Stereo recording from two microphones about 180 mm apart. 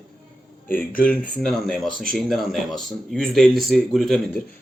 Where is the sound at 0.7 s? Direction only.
50° left (ahead or behind).